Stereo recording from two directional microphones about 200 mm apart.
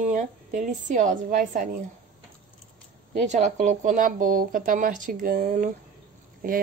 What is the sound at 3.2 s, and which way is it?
A woman's voice, 35° right (ahead or behind).